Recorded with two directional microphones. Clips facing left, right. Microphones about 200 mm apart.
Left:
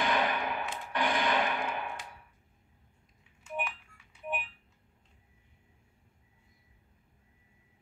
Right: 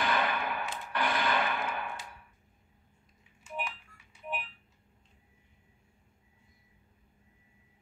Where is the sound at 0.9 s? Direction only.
15° left (ahead or behind).